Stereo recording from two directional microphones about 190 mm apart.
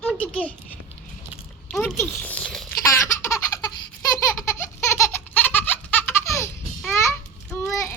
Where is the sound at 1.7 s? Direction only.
10° left (ahead or behind).